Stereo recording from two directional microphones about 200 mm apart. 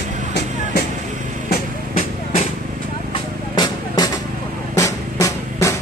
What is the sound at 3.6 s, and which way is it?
Music, 20° left (ahead or behind).